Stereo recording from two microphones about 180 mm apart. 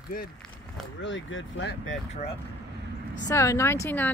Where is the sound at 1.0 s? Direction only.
90° left.